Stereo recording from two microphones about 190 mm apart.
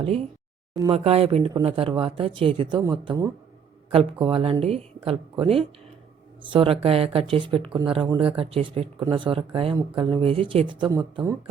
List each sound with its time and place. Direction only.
0.7 s speech: 20° right (ahead or behind)
0.9 s a man's voice: 30° right (ahead or behind); by 3.3 s 15° right (ahead or behind)
3.9 s speech: 30° right (ahead or behind)